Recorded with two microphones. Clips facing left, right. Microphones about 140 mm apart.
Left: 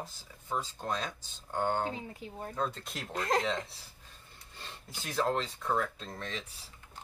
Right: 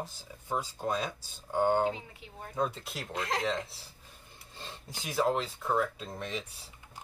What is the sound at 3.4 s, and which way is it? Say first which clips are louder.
Speech: right 1 dB; centre (ahead or behind).